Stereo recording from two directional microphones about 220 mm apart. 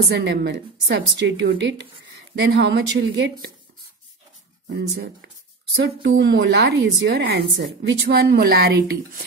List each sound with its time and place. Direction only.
0.1 s speech: 50° right (ahead or behind)
5.8 s speech: 55° right (ahead or behind)